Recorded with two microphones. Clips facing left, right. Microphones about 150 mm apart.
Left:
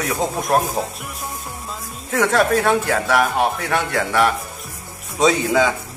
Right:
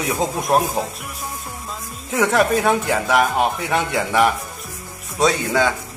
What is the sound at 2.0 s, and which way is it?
Speech, 10° right (ahead or behind).